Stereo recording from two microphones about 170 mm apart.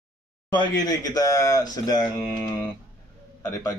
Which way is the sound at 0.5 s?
25° left (ahead or behind).